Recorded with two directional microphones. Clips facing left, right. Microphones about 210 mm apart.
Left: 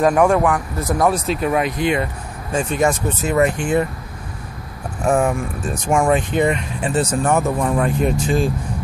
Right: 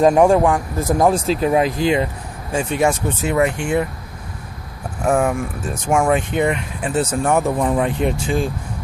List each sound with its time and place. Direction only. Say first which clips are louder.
0.0 s speech: right 2 dB; 25° right (ahead or behind)
2.5 s speech: even; 15° right (ahead or behind)
5.0 s speech: even; 5° right (ahead or behind)